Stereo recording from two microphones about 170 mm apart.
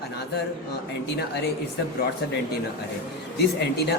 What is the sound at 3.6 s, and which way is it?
Speech, 75° left (ahead or behind).